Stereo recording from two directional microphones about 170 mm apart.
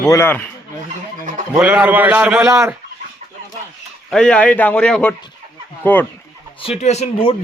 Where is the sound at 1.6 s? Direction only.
5° right (ahead or behind).